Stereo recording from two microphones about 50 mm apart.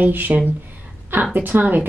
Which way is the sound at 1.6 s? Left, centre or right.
Right.